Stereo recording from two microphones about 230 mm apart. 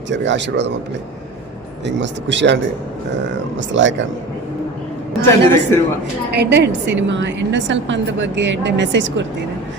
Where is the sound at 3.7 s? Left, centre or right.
Right.